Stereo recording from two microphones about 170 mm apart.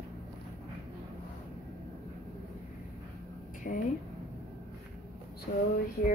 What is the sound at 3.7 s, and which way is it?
Speech, 60° left (ahead or behind).